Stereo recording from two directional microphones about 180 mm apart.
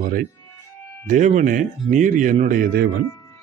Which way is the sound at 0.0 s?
50° right (ahead or behind).